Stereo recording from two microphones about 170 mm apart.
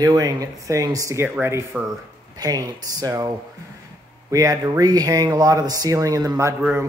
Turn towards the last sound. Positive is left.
turn(degrees=-20)  # may be behind; listen again after turning